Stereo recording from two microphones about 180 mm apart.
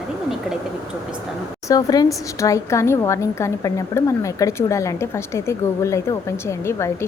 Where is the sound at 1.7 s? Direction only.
20° left (ahead or behind).